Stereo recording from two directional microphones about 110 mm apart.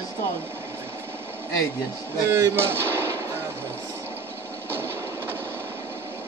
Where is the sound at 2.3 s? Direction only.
25° right (ahead or behind).